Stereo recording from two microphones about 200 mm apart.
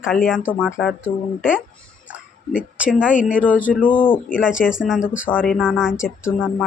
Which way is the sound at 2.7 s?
5° right (ahead or behind).